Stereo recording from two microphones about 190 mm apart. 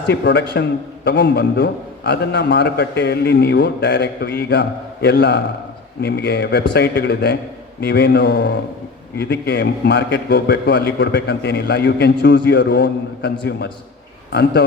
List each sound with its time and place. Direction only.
0.1 s a man's voice: 60° left (ahead or behind)